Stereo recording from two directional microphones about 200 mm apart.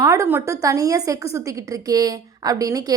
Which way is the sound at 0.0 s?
15° right (ahead or behind).